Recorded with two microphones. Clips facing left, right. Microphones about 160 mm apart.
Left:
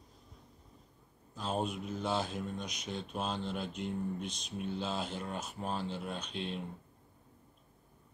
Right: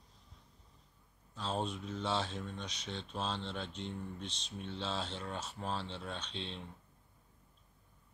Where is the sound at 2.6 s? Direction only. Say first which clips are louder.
Left 3 dB; 30° right (ahead or behind).